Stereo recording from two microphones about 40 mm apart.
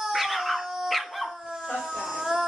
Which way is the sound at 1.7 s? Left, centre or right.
Centre.